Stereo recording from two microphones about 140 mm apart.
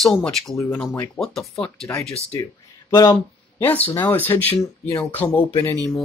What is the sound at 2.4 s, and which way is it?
Speech, 25° left (ahead or behind).